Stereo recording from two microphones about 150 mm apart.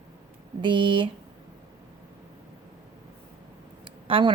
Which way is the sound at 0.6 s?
35° right (ahead or behind).